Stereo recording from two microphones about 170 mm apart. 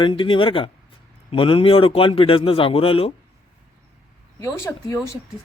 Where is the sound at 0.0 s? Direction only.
30° left (ahead or behind).